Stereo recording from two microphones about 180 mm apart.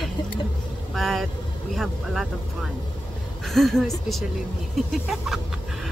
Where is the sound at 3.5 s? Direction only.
Centre (ahead or behind).